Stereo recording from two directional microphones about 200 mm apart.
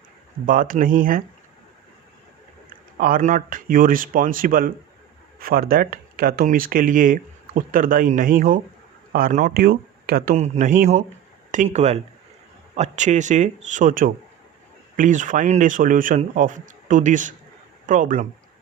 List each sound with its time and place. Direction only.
0.4 s speech: 45° right (ahead or behind)
2.6 s speech: 45° right (ahead or behind)